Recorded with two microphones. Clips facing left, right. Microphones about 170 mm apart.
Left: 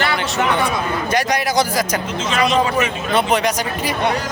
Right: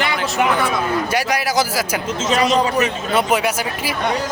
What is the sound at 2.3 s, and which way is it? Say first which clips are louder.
Speech: right 1 dB; 40° right (ahead or behind).